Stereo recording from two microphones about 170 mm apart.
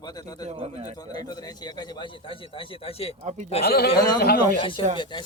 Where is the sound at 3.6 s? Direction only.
70° left (ahead or behind).